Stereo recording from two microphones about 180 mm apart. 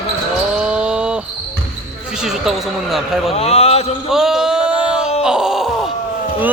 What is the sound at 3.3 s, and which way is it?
Speech, 35° left (ahead or behind).